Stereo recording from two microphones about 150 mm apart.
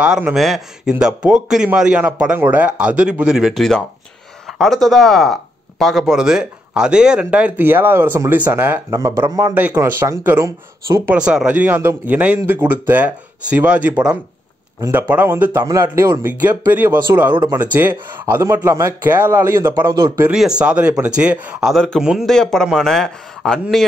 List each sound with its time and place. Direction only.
0.0 s speech: 5° right (ahead or behind)
11.1 s speech: 5° right (ahead or behind)
20.2 s speech: 5° right (ahead or behind)